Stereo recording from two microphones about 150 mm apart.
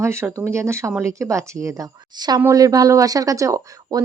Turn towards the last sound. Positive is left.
turn(degrees=-20)  # may be behind; listen again after turning